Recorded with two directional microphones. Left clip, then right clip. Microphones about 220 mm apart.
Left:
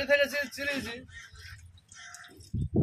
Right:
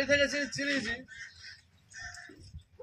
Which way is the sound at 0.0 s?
35° left (ahead or behind).